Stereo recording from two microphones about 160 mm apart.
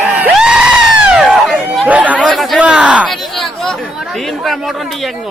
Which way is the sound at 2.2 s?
5° left (ahead or behind).